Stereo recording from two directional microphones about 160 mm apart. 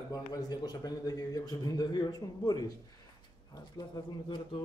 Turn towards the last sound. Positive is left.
turn(degrees=30)  # may be behind; listen again after turning